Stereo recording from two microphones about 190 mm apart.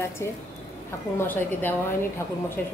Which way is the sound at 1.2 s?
10° left (ahead or behind).